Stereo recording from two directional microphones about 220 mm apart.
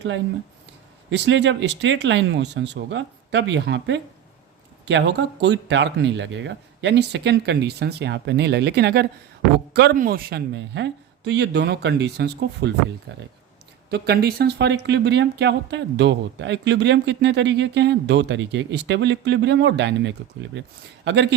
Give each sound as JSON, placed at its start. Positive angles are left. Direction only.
{"t": 1.1, "sound": "speech", "side_deg": -50}